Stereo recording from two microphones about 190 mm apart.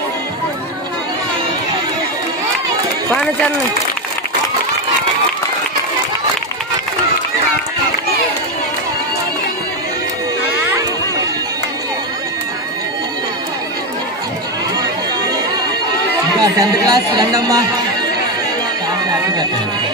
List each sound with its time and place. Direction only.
16.3 s speech: 20° right (ahead or behind)